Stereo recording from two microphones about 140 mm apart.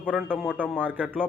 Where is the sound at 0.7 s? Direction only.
10° right (ahead or behind).